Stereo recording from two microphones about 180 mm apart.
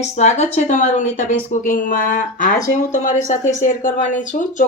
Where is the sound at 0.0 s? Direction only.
40° left (ahead or behind).